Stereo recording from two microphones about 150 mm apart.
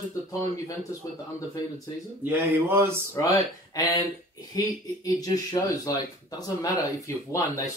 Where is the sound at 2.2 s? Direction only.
15° right (ahead or behind).